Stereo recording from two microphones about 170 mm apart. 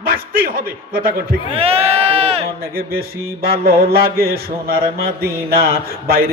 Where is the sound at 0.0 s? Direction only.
60° right (ahead or behind).